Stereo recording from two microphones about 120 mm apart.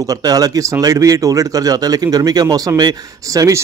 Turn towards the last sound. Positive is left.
turn(degrees=-30)  # may be behind; listen again after turning